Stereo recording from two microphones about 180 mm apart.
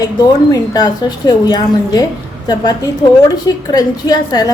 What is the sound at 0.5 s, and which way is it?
A woman's voice, 20° left (ahead or behind).